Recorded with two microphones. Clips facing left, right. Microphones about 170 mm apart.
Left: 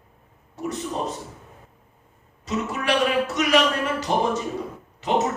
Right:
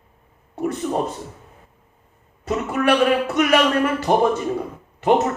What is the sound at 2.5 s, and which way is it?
A man's voice, 55° right (ahead or behind).